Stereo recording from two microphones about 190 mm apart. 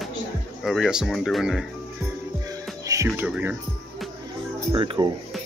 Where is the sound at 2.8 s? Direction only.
15° right (ahead or behind).